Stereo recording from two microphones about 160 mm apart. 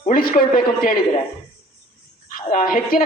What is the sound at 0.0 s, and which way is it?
Speech, 60° left (ahead or behind).